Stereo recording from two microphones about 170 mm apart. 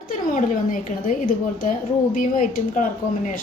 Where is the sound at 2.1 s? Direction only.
50° left (ahead or behind).